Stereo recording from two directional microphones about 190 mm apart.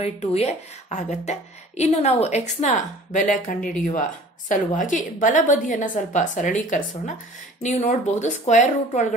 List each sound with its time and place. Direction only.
0.0 s a woman's voice: 35° left (ahead or behind)